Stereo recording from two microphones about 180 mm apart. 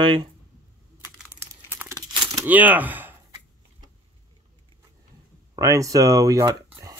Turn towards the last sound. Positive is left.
turn(degrees=-20)  # may be behind; listen again after turning